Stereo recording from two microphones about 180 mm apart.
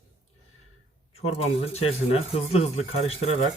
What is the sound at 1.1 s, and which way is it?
A man's voice, 35° left (ahead or behind).